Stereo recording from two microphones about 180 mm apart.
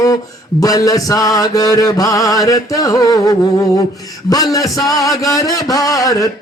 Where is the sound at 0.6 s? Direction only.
20° left (ahead or behind).